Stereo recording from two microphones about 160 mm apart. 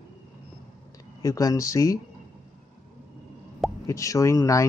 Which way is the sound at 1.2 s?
20° left (ahead or behind).